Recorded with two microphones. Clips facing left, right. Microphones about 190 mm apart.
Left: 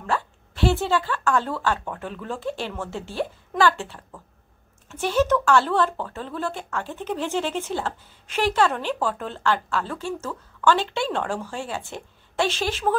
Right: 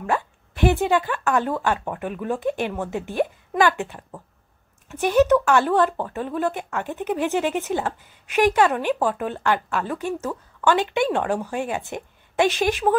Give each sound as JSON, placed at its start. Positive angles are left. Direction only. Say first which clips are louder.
{"t": 0.0, "sound": "speech", "louder": "right 2 dB", "side_deg": -15}